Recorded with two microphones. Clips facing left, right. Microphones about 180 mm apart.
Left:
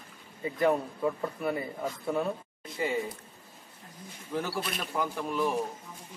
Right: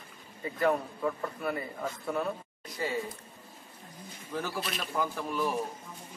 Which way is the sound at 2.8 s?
15° left (ahead or behind).